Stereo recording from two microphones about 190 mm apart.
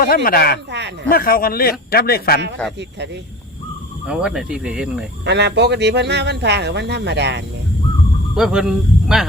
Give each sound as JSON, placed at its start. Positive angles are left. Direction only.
{"t": 0.0, "sound": "speech", "side_deg": 50}
{"t": 4.0, "sound": "speech", "side_deg": -5}
{"t": 5.2, "sound": "speech", "side_deg": -65}
{"t": 8.4, "sound": "speech", "side_deg": -5}